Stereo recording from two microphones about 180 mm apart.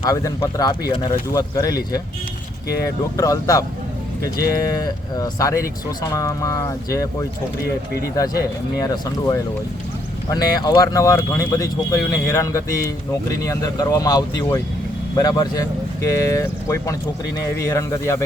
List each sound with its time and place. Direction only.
0.0 s speech: 20° left (ahead or behind)
3.2 s speech: 20° left (ahead or behind)